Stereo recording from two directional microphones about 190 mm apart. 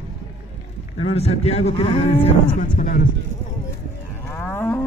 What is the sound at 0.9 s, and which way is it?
Speech, 30° left (ahead or behind).